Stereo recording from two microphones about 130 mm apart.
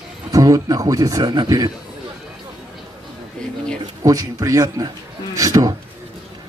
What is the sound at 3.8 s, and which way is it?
Speech, 25° right (ahead or behind).